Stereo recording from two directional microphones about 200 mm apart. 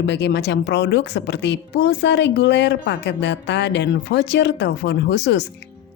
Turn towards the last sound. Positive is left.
turn(degrees=60)  # may be behind; listen again after turning